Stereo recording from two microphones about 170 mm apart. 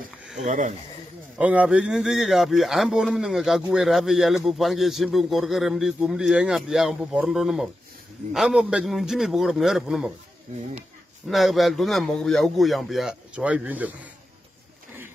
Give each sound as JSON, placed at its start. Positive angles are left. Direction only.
{"t": 0.4, "sound": "speech", "side_deg": -45}
{"t": 1.4, "sound": "a man's voice", "side_deg": -10}
{"t": 11.2, "sound": "a man's voice", "side_deg": 0}